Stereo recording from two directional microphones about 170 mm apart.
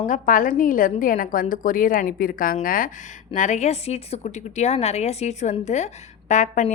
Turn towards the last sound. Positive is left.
turn(degrees=45)  # may be behind; listen again after turning